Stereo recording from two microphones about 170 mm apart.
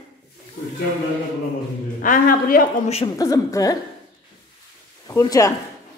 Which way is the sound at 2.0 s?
55° left (ahead or behind).